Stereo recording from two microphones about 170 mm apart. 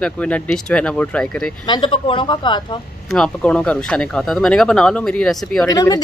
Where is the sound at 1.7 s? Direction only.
30° left (ahead or behind).